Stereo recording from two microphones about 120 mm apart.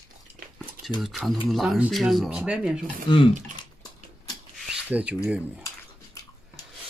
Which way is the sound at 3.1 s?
40° left (ahead or behind).